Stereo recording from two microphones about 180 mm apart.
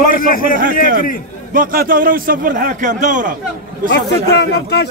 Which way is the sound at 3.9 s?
65° left (ahead or behind).